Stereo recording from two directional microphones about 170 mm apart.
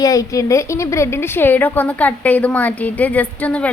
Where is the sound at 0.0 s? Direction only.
20° left (ahead or behind).